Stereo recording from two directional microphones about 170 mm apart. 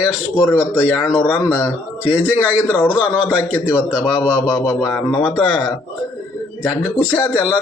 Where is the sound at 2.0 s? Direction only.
10° right (ahead or behind).